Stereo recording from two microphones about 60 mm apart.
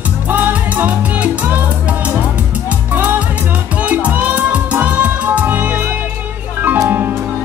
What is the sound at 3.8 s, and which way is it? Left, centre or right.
Music, right.